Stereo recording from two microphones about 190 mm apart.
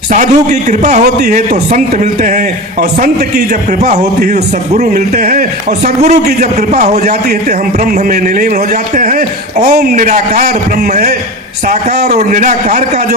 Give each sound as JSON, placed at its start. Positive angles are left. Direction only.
{"t": 0.1, "sound": "a man's voice", "side_deg": -40}
{"t": 11.7, "sound": "a man's voice", "side_deg": -40}